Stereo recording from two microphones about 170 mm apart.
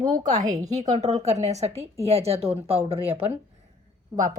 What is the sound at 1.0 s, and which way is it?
Speech, 40° right (ahead or behind).